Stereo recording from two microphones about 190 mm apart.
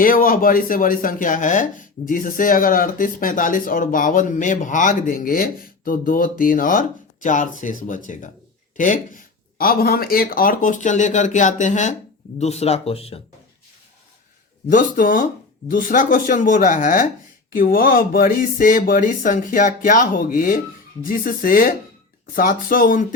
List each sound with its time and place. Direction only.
0.0 s speech: 45° left (ahead or behind); by 13.1 s 30° left (ahead or behind)
14.7 s speech: 45° left (ahead or behind)